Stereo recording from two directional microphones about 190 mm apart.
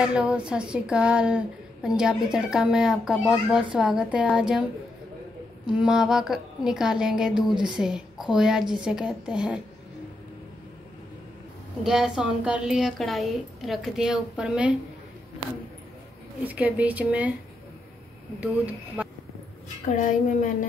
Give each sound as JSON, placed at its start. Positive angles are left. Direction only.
{"t": 0.0, "sound": "a woman's voice", "side_deg": -5}
{"t": 5.7, "sound": "a woman's voice", "side_deg": -5}
{"t": 11.8, "sound": "a woman's voice", "side_deg": 0}
{"t": 16.4, "sound": "speech", "side_deg": -10}
{"t": 18.4, "sound": "speech", "side_deg": -10}
{"t": 19.8, "sound": "a woman's voice", "side_deg": 40}